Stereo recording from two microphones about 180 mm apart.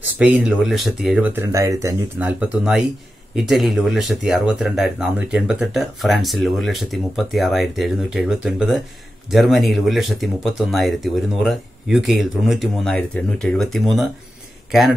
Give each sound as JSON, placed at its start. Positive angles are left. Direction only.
{"t": 0.2, "sound": "speech", "side_deg": -5}